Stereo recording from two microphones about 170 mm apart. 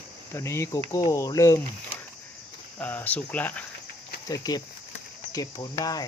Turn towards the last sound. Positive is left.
turn(degrees=20)  # may be behind; listen again after turning